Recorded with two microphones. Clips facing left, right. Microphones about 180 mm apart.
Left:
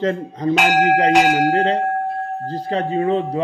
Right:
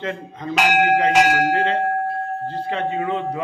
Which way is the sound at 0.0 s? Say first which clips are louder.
Left 8 dB; 35° left (ahead or behind).